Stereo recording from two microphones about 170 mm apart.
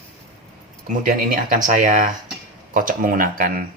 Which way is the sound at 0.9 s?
50° right (ahead or behind).